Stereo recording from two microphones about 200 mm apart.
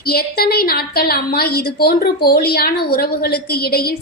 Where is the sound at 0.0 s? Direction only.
50° left (ahead or behind).